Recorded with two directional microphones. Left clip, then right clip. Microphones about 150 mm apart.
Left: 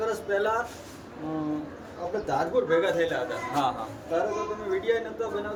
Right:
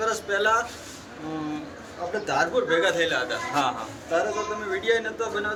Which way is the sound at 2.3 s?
20° left (ahead or behind).